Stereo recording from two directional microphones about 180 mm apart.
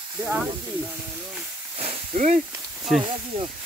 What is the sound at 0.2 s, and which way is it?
Speech, 5° right (ahead or behind).